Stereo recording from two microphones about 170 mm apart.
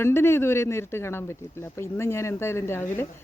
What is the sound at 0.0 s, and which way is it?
Speech, 15° left (ahead or behind).